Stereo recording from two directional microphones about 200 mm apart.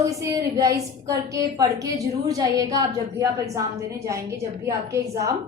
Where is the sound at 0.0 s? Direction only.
15° right (ahead or behind).